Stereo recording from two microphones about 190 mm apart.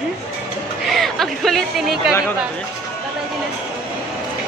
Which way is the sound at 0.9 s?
Centre (ahead or behind).